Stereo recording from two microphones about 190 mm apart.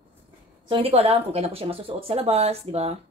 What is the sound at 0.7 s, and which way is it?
A woman's voice, 30° right (ahead or behind).